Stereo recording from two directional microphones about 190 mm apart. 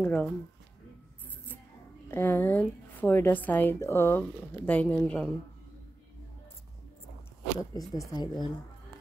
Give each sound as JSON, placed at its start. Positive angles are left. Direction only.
{"t": 0.0, "sound": "a woman's voice", "side_deg": 10}
{"t": 2.0, "sound": "a woman's voice", "side_deg": 10}
{"t": 7.7, "sound": "speech", "side_deg": 20}